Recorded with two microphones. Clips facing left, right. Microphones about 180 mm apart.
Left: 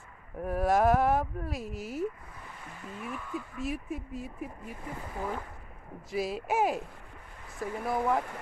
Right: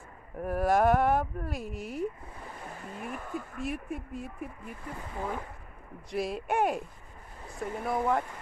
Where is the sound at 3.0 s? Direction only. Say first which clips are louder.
Even; 45° right (ahead or behind).